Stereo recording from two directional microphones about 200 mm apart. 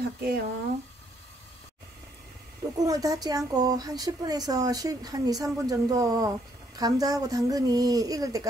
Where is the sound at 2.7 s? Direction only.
15° right (ahead or behind).